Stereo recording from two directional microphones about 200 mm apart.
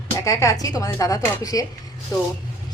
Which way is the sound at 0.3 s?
15° left (ahead or behind).